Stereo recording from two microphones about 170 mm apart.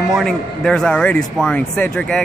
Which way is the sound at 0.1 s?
Centre (ahead or behind).